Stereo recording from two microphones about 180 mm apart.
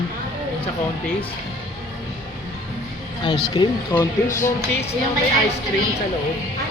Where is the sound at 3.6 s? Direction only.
25° left (ahead or behind).